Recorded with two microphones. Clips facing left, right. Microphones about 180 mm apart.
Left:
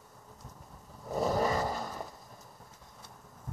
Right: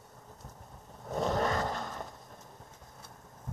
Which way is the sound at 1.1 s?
5° left (ahead or behind).